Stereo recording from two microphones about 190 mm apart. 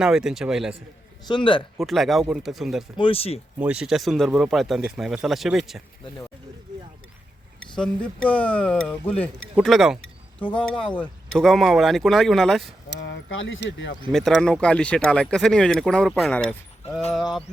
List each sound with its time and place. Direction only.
0.0 s speech: 5° right (ahead or behind)
1.3 s speech: 25° left (ahead or behind)
1.8 s speech: centre (ahead or behind)
3.0 s speech: 30° left (ahead or behind)
3.6 s speech: 5° right (ahead or behind)
8.3 s speech: 10° left (ahead or behind)
12.9 s speech: 65° left (ahead or behind)
14.1 s speech: centre (ahead or behind)